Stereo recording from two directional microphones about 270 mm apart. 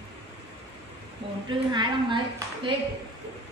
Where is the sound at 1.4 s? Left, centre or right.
Centre.